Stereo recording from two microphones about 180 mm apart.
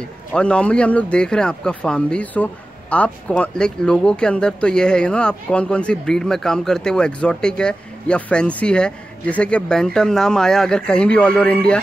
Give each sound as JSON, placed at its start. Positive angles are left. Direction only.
{"t": 0.3, "sound": "speech", "side_deg": 5}